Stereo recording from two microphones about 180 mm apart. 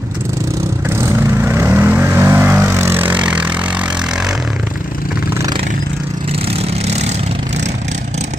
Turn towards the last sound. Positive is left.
turn(degrees=-40)  # may be behind; listen again after turning